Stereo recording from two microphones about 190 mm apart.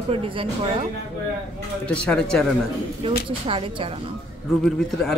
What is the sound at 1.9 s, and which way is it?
Speech, 5° left (ahead or behind).